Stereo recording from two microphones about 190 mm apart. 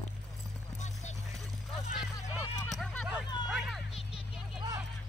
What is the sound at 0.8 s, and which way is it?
Clip-clop, 40° left (ahead or behind).